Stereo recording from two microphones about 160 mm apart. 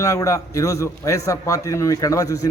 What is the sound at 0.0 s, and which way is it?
A man's voice, 20° left (ahead or behind).